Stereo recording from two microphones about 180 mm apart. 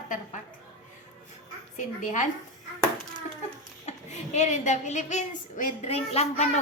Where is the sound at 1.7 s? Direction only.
45° left (ahead or behind).